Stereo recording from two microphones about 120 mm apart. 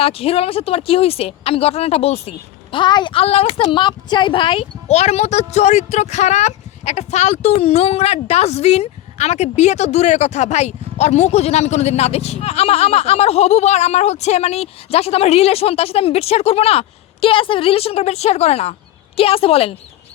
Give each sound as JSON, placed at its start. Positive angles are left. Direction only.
{"t": 0.0, "sound": "speech", "side_deg": 55}
{"t": 2.7, "sound": "speech", "side_deg": 40}
{"t": 3.6, "sound": "speech", "side_deg": 40}
{"t": 4.9, "sound": "speech", "side_deg": 65}